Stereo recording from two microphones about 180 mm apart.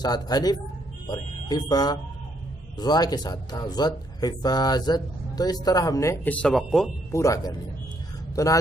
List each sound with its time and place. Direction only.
0.0 s speech: 20° left (ahead or behind); by 6.9 s centre (ahead or behind)
7.1 s speech: 15° left (ahead or behind)